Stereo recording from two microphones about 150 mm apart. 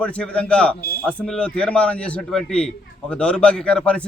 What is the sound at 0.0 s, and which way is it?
A man's voice, 5° left (ahead or behind).